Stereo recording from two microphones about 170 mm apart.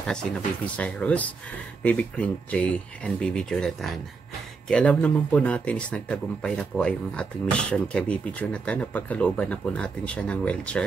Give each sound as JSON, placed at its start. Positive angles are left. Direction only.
{"t": 0.0, "sound": "speech", "side_deg": 5}